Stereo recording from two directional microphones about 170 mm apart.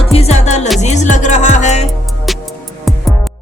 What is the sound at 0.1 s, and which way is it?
Music, 40° left (ahead or behind).